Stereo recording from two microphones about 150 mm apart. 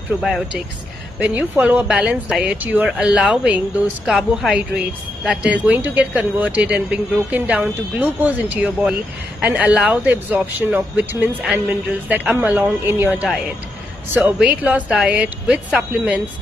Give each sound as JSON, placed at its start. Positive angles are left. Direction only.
{"t": 0.2, "sound": "a woman's voice", "side_deg": 0}